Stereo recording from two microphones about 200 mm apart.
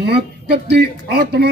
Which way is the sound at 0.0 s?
55° right (ahead or behind).